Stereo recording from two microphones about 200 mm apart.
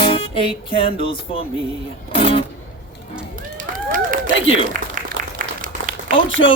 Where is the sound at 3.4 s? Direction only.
40° right (ahead or behind).